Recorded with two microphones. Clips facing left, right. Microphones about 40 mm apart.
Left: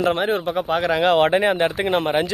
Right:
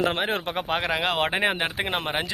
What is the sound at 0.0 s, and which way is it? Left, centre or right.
Speech, right.